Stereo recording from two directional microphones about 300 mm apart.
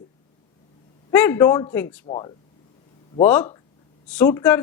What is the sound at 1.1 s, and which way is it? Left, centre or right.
A man's voice, centre.